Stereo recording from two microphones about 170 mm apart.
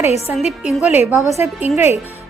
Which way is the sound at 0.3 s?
Centre (ahead or behind).